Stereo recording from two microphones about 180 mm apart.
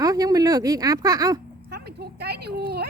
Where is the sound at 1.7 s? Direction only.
65° right (ahead or behind).